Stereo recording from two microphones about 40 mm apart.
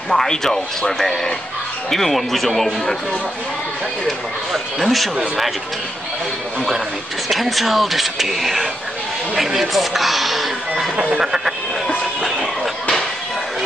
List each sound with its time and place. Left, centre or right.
0.1 s speech: centre
4.5 s speech: centre
7.2 s speech: centre
11.1 s speech: centre